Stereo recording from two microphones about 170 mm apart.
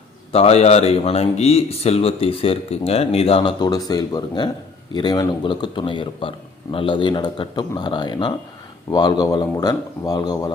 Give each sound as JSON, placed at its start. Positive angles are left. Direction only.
{"t": 0.3, "sound": "a man's voice", "side_deg": 40}